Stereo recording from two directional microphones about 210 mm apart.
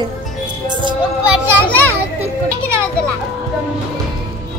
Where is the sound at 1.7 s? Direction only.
10° left (ahead or behind).